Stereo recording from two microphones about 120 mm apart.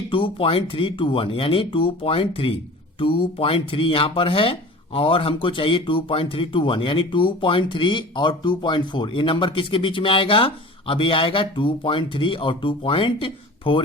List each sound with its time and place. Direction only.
0.1 s speech: 45° left (ahead or behind)